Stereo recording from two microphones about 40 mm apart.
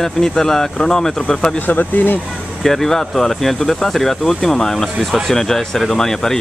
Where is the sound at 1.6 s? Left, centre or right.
Left.